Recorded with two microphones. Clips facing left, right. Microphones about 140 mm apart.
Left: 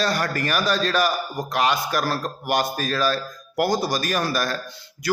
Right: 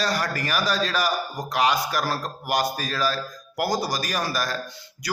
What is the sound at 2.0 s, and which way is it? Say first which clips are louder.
Speech: left 2 dB; 15° right (ahead or behind).